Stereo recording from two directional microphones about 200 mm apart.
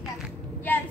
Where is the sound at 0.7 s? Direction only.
10° left (ahead or behind).